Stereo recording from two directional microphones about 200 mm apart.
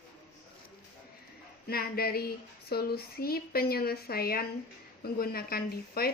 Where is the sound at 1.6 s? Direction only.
50° left (ahead or behind).